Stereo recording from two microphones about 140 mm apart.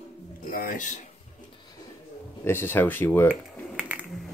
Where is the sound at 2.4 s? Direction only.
15° left (ahead or behind).